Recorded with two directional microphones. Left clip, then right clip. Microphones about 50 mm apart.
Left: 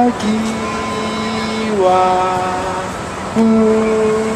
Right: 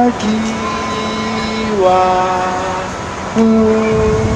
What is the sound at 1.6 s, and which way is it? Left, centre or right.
Music, centre.